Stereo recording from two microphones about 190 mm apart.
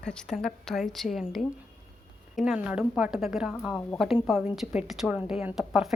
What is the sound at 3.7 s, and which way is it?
Speech, 15° left (ahead or behind).